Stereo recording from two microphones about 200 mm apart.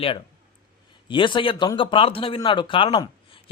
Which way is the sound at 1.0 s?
25° left (ahead or behind).